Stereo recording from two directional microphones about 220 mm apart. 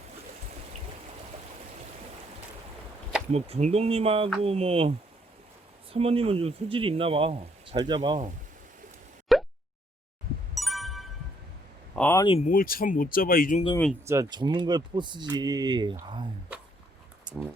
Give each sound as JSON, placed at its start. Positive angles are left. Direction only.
{"t": 3.3, "sound": "speech", "side_deg": -30}
{"t": 9.3, "sound": "plop", "side_deg": 0}
{"t": 10.5, "sound": "a sound", "side_deg": 0}
{"t": 11.9, "sound": "speech", "side_deg": 10}
{"t": 12.2, "sound": "speech", "side_deg": 25}
{"t": 12.5, "sound": "speech", "side_deg": 40}
{"t": 14.0, "sound": "speech", "side_deg": -15}